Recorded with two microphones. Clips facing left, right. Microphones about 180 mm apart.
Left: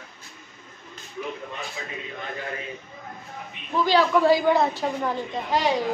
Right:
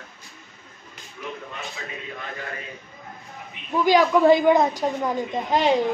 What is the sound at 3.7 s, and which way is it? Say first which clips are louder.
Speech: right 2 dB; 15° right (ahead or behind).